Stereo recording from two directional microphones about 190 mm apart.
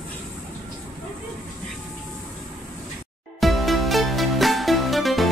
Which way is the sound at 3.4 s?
Centre (ahead or behind).